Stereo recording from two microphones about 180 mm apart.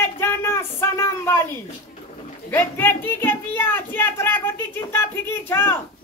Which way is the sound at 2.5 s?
10° left (ahead or behind).